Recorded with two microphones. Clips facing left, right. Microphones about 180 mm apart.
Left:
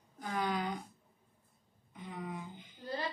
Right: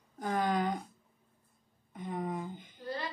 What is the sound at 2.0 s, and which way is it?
Speech, 45° right (ahead or behind).